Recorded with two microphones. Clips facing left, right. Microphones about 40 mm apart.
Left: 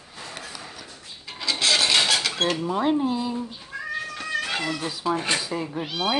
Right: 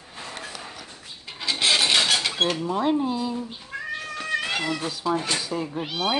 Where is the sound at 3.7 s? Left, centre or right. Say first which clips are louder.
Right 1 dB; right.